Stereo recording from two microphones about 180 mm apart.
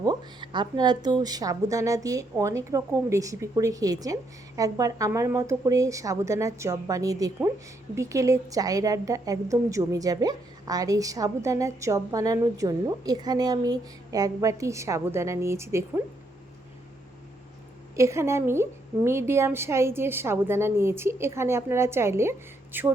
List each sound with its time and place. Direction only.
0.0 s a woman's voice: 25° right (ahead or behind)
17.9 s a woman's voice: 15° right (ahead or behind)